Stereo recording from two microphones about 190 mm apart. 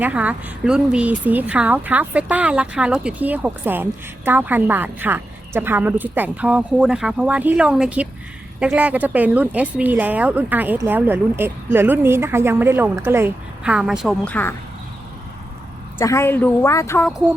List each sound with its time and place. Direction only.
0.0 s speech: 5° right (ahead or behind)
14.3 s speech: 10° left (ahead or behind)
16.0 s speech: 15° left (ahead or behind)